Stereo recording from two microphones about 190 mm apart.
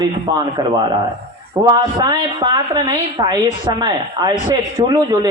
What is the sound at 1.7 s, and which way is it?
A woman's voice, 20° right (ahead or behind).